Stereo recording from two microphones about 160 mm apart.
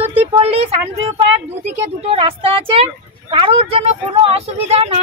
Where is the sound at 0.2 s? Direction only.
40° right (ahead or behind).